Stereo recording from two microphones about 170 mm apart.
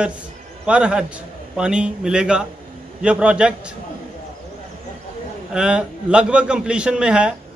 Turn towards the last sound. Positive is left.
turn(degrees=-5)  # may be behind; listen again after turning